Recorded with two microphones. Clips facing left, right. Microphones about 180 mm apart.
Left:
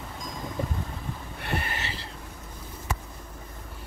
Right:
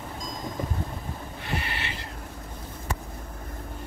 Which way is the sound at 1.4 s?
60° left (ahead or behind).